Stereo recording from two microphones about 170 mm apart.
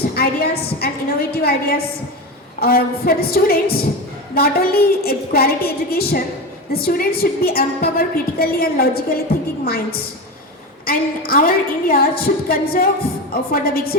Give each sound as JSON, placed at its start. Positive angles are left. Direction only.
{"t": 0.1, "sound": "a woman's voice", "side_deg": 65}
{"t": 2.6, "sound": "a woman's voice", "side_deg": 65}